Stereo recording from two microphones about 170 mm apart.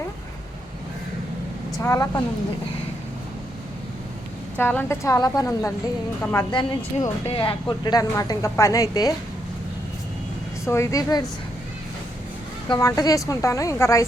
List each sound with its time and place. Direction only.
1.8 s speech: 20° left (ahead or behind)
4.5 s a woman's voice: 10° left (ahead or behind)
10.7 s a woman's voice: 15° left (ahead or behind)
12.6 s speech: 25° left (ahead or behind)